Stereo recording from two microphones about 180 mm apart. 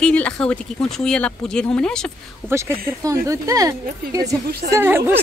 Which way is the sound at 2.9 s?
15° right (ahead or behind).